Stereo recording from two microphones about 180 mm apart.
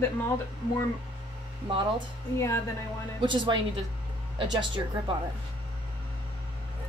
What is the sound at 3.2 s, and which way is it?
A woman's voice, 25° right (ahead or behind).